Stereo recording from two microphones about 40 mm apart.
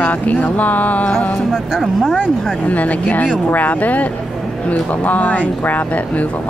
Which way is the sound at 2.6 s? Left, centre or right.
Left.